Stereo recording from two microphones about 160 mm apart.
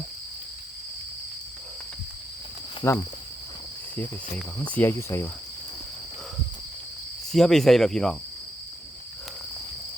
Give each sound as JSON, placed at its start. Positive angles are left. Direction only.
{"t": 2.8, "sound": "speech", "side_deg": 20}
{"t": 4.4, "sound": "speech", "side_deg": 10}
{"t": 7.3, "sound": "speech", "side_deg": 0}